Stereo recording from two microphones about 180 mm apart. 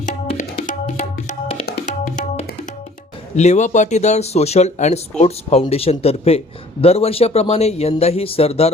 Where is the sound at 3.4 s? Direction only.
40° left (ahead or behind).